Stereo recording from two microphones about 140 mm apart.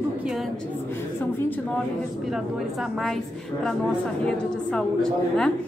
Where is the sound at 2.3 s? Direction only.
5° right (ahead or behind).